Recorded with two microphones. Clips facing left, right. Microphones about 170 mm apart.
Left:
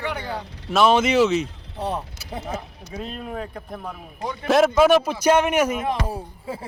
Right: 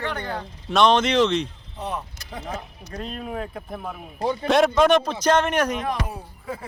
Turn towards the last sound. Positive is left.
turn(degrees=30)  # may be behind; listen again after turning